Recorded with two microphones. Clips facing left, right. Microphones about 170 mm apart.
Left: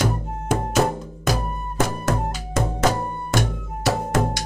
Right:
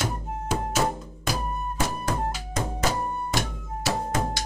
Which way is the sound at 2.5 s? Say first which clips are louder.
Left 7 dB; 50° left (ahead or behind).